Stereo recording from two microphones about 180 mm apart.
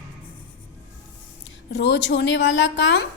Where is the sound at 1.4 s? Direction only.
75° left (ahead or behind).